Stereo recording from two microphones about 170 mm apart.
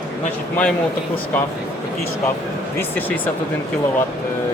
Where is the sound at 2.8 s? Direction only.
10° left (ahead or behind).